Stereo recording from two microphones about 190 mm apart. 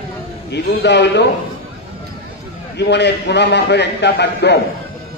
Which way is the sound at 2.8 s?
65° left (ahead or behind).